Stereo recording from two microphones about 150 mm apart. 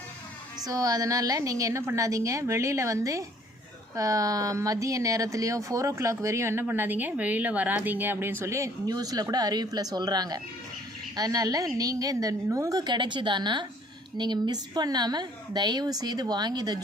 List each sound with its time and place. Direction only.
0.6 s speech: 25° right (ahead or behind)